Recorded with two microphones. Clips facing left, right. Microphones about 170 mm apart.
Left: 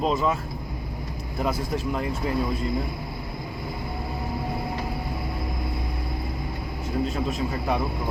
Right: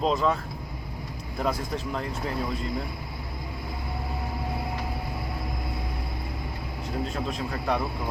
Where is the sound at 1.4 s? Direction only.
5° left (ahead or behind).